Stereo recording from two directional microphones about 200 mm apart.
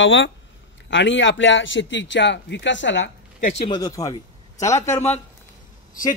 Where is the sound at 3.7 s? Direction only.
20° left (ahead or behind).